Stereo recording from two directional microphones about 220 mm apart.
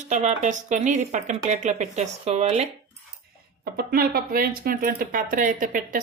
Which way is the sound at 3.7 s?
45° right (ahead or behind).